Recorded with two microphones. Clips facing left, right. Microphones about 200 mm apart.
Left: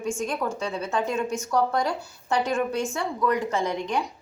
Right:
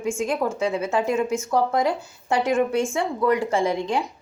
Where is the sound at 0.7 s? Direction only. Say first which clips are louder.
Right 5 dB; 25° right (ahead or behind).